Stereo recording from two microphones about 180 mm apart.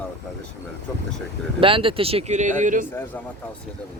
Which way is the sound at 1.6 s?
30° right (ahead or behind).